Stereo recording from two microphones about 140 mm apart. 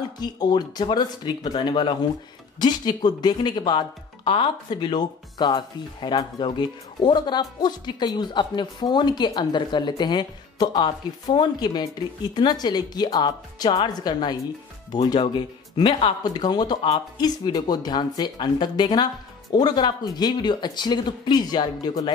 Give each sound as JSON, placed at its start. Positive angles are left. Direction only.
{"t": 0.2, "sound": "speech", "side_deg": 30}